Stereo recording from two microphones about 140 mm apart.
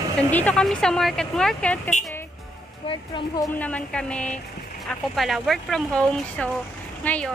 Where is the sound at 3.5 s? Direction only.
10° left (ahead or behind).